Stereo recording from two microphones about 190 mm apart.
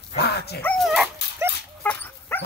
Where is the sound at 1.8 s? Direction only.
10° left (ahead or behind).